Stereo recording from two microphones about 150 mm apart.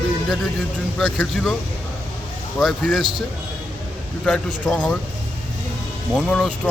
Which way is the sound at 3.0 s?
35° right (ahead or behind).